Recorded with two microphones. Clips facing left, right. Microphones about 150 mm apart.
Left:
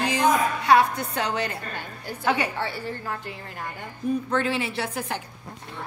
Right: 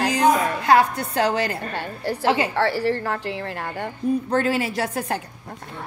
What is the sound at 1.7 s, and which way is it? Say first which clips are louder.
A woman's voice: right 8 dB; 70° right (ahead or behind).